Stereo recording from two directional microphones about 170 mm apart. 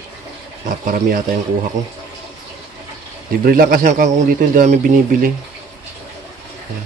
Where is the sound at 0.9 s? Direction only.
55° right (ahead or behind).